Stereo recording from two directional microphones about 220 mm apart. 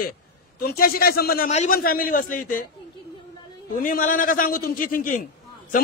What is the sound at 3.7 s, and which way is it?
A man's voice, 40° left (ahead or behind).